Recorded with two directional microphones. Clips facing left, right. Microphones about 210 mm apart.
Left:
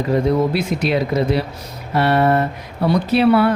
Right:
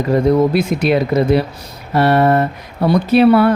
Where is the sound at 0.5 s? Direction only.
55° right (ahead or behind).